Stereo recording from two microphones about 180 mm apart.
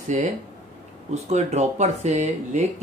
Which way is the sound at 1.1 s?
40° right (ahead or behind).